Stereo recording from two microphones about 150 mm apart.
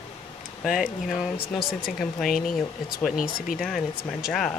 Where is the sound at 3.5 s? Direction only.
Centre (ahead or behind).